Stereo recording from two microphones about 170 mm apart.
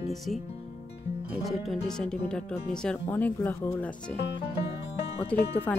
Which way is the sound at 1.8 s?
5° left (ahead or behind).